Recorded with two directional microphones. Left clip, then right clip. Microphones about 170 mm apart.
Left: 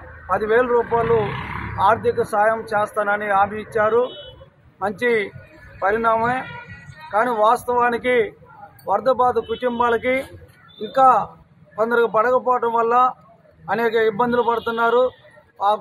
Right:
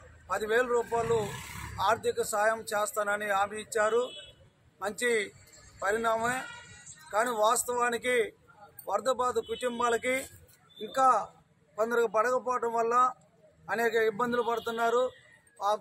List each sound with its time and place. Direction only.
0.3 s a man's voice: 15° right (ahead or behind)
12.4 s speech: 25° right (ahead or behind)
12.7 s speech: 10° right (ahead or behind)